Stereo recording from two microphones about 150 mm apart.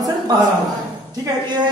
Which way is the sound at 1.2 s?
30° right (ahead or behind).